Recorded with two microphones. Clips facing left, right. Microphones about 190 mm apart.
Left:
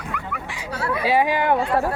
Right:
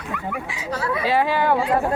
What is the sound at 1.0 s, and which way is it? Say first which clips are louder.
Speech: left 1 dB; 15° left (ahead or behind).